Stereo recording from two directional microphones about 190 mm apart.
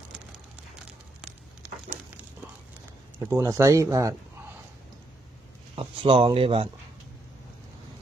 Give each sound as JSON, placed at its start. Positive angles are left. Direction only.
{"t": 1.9, "sound": "a sound", "side_deg": -10}
{"t": 3.3, "sound": "speech", "side_deg": -15}
{"t": 5.8, "sound": "speech", "side_deg": -30}